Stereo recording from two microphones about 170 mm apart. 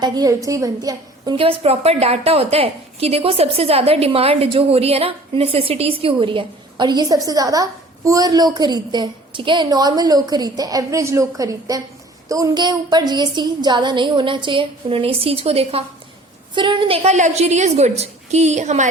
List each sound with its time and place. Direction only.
0.0 s a woman's voice: 25° right (ahead or behind); by 18.9 s 45° right (ahead or behind)